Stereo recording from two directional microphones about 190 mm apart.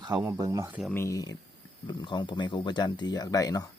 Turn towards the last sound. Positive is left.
turn(degrees=20)  # may be behind; listen again after turning